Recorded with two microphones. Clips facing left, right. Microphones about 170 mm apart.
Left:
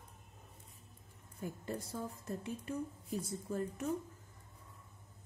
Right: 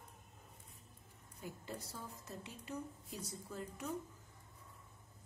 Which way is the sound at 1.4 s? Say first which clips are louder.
Left 6 dB; 50° left (ahead or behind).